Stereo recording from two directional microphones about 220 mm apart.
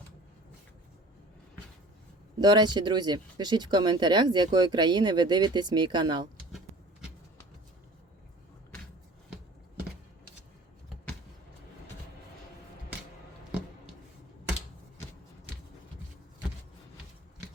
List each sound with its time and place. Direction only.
2.4 s speech: 20° right (ahead or behind)